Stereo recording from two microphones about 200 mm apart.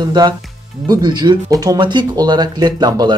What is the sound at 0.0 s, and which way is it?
Speech, 20° right (ahead or behind).